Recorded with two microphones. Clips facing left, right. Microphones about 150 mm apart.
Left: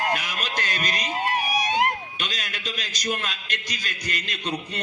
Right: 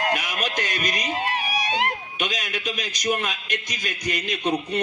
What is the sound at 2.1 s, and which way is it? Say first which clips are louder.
A man's voice: right 5 dB; 50° right (ahead or behind).